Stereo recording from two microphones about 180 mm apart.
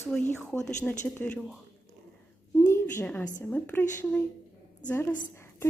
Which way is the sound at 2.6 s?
10° left (ahead or behind).